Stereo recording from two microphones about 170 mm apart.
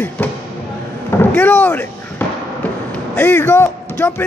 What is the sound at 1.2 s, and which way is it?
Vehicle, 10° left (ahead or behind).